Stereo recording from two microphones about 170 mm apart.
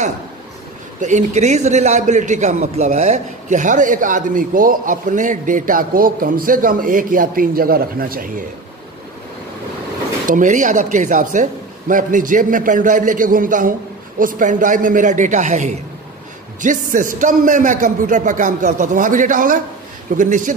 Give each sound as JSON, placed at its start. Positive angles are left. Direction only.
{"t": 1.0, "sound": "a man's voice", "side_deg": -45}
{"t": 10.2, "sound": "a man's voice", "side_deg": -50}